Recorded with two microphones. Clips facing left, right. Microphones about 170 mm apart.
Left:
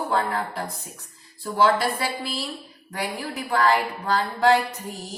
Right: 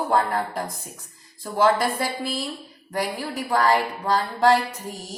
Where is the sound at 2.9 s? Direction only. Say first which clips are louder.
Right 3 dB; 35° right (ahead or behind).